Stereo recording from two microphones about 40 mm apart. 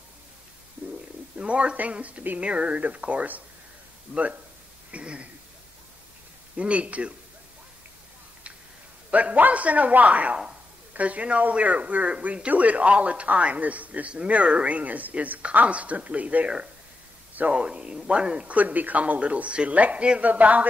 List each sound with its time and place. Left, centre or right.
1.4 s a man's voice: right
4.1 s a man's voice: right
6.5 s a man's voice: right
9.1 s a man's voice: right
17.5 s a man's voice: right
18.5 s a man's voice: right